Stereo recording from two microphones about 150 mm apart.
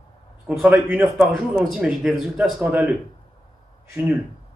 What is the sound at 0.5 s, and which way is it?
A man's voice, 5° right (ahead or behind).